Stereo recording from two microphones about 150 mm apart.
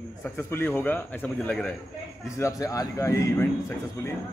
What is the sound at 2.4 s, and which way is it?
Speech, 20° left (ahead or behind).